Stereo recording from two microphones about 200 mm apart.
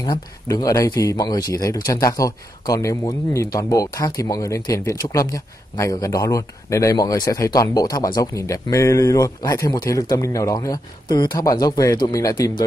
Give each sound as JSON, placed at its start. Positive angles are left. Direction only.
{"t": 0.0, "sound": "speech", "side_deg": 20}